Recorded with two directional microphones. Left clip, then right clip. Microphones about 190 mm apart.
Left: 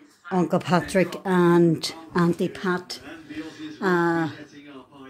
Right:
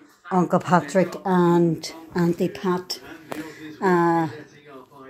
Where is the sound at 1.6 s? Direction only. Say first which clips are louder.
Left 2 dB; 25° left (ahead or behind).